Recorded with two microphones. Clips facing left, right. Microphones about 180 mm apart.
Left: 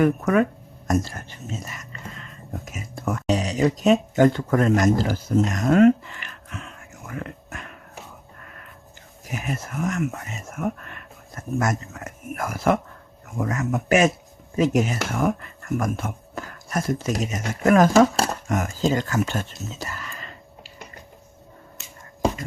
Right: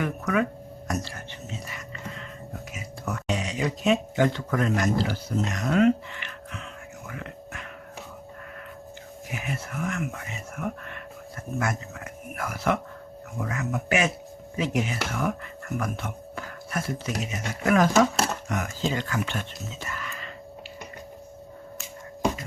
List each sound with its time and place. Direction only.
0.0 s speech: 45° left (ahead or behind)
0.9 s whispering: 45° left (ahead or behind)
2.6 s speech: 45° left (ahead or behind)
7.1 s a sound: 45° left (ahead or behind)
9.3 s speech: 45° left (ahead or behind)